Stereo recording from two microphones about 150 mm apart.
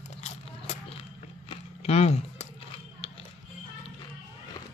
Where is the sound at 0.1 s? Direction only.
45° left (ahead or behind).